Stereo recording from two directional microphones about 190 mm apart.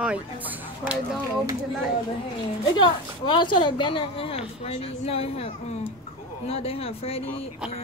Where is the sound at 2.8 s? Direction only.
25° left (ahead or behind).